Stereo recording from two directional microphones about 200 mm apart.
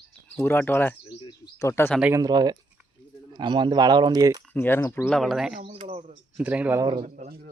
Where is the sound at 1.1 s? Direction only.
25° left (ahead or behind).